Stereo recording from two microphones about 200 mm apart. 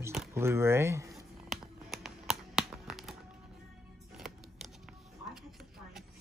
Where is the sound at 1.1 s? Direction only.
Centre (ahead or behind).